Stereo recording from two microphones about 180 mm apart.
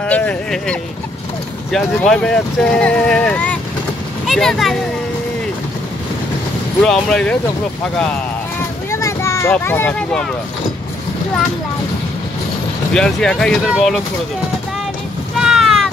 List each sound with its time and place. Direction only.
0.0 s a sound: 5° left (ahead or behind)
1.7 s speech: 5° left (ahead or behind)
6.8 s speech: 5° left (ahead or behind)
8.9 s vehicle: 15° left (ahead or behind)
9.5 s speech: 10° left (ahead or behind)
12.9 s speech: 5° left (ahead or behind)
15.3 s boat: centre (ahead or behind)